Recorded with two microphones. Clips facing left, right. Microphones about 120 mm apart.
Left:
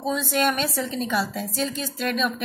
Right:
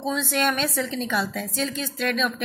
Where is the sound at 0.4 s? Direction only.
45° left (ahead or behind).